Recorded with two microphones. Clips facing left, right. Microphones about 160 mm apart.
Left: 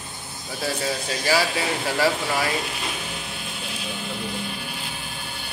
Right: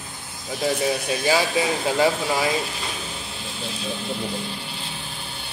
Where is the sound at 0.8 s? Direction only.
20° right (ahead or behind).